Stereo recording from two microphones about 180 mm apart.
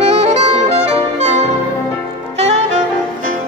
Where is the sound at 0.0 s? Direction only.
35° right (ahead or behind).